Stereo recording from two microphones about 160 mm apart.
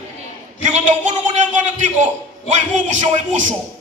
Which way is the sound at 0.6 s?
50° right (ahead or behind).